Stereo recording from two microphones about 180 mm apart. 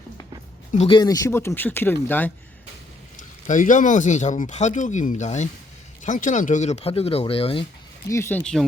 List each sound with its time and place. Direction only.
0.7 s speech: 40° left (ahead or behind)
0.9 s speech: 20° left (ahead or behind)
3.2 s speech: 45° left (ahead or behind)
8.0 s speech: 15° left (ahead or behind)